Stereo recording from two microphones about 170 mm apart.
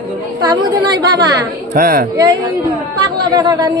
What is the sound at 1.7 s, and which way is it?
Speech, 55° right (ahead or behind).